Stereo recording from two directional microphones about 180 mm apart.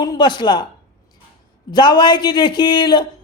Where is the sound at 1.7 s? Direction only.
25° left (ahead or behind).